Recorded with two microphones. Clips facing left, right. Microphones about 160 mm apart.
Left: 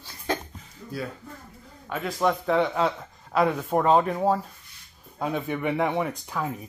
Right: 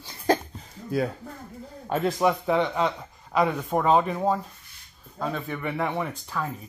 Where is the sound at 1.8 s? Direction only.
35° right (ahead or behind).